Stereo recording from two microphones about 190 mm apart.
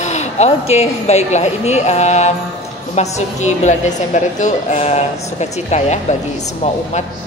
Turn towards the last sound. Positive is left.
turn(degrees=35)  # may be behind; listen again after turning